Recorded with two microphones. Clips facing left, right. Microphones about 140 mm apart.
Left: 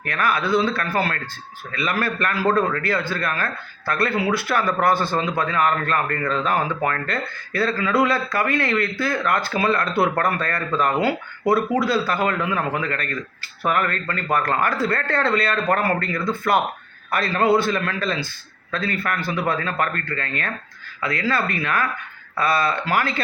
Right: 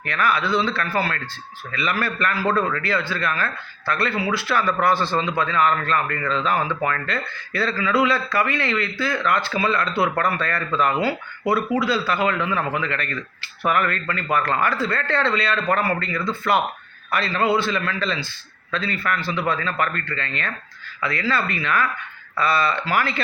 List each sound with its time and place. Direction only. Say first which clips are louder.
0.0 s speech: even; 45° left (ahead or behind)